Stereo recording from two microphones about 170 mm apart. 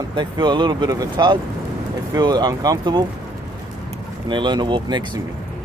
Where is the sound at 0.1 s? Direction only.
25° right (ahead or behind).